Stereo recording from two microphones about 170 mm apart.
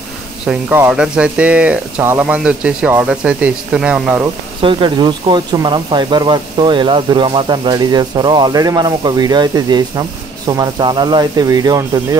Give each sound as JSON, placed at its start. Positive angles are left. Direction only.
{"t": 0.5, "sound": "speech", "side_deg": -10}
{"t": 4.6, "sound": "speech", "side_deg": -30}